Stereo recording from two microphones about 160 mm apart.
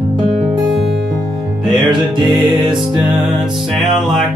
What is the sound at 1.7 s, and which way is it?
Music, 30° right (ahead or behind).